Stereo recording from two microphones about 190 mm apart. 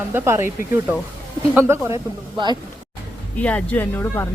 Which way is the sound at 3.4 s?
5° left (ahead or behind).